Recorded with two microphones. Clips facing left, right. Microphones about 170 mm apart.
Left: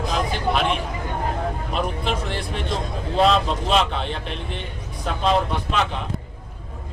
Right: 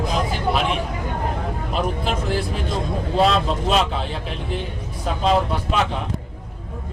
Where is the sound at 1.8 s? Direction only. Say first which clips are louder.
Right 2 dB; centre (ahead or behind).